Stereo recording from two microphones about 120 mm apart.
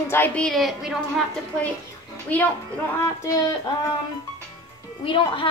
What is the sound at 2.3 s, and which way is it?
Speech, 15° left (ahead or behind).